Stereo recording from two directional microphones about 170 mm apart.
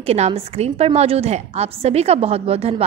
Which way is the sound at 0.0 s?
35° right (ahead or behind).